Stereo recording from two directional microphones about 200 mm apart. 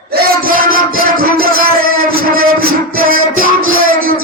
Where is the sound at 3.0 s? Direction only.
45° right (ahead or behind).